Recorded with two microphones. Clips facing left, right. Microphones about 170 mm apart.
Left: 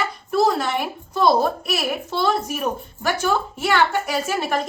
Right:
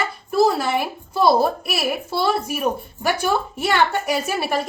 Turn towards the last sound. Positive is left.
turn(degrees=-15)  # may be behind; listen again after turning